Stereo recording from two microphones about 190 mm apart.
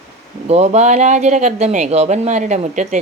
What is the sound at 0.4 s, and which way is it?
Speech, 35° right (ahead or behind).